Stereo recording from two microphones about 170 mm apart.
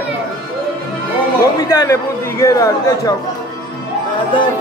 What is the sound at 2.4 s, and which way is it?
Speech, 20° left (ahead or behind).